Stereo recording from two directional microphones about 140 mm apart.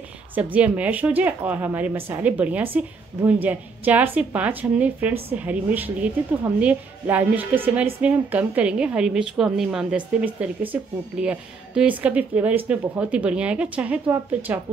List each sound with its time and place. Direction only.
0.3 s a woman's voice: 10° right (ahead or behind)